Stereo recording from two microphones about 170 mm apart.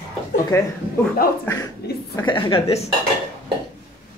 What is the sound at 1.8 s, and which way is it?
Chuckle, 65° left (ahead or behind).